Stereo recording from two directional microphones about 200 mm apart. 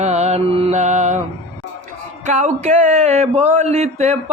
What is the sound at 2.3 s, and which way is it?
Music, 35° right (ahead or behind).